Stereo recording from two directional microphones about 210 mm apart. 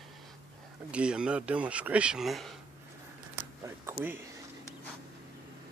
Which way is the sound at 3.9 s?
10° right (ahead or behind).